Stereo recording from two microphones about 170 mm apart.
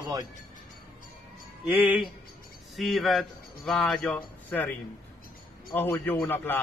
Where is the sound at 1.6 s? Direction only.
10° right (ahead or behind); by 4.7 s 10° left (ahead or behind).